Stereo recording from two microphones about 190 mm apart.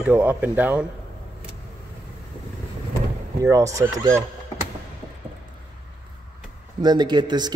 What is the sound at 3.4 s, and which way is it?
Speech, 15° right (ahead or behind).